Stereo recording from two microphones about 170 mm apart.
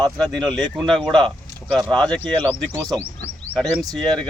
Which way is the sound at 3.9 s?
5° left (ahead or behind).